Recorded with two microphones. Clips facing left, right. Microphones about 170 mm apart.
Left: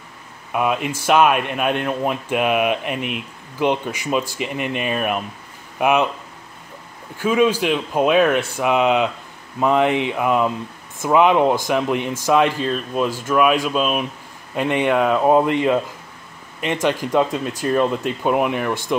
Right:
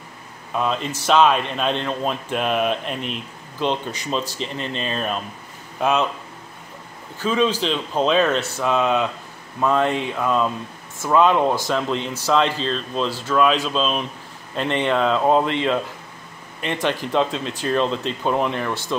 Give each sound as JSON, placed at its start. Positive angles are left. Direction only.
{"t": 0.5, "sound": "speech", "side_deg": 10}
{"t": 7.2, "sound": "speech", "side_deg": 10}
{"t": 17.0, "sound": "speech", "side_deg": 10}